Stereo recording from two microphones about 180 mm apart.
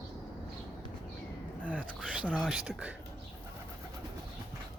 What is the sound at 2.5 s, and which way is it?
Speech, 5° right (ahead or behind).